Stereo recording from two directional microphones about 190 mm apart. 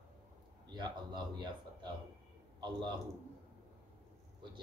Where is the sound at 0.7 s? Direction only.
25° right (ahead or behind).